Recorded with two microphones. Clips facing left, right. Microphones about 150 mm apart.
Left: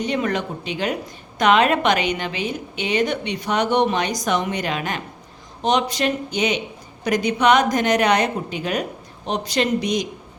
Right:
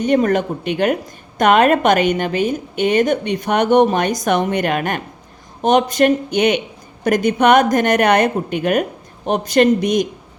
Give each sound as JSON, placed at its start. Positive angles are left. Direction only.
{"t": 0.0, "sound": "a woman's voice", "side_deg": -50}